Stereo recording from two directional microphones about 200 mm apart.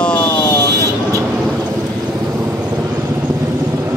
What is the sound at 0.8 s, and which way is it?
Vehicle, 15° right (ahead or behind).